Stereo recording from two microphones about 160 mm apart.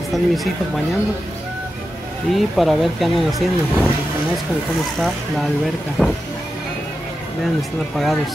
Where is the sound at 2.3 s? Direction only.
Centre (ahead or behind).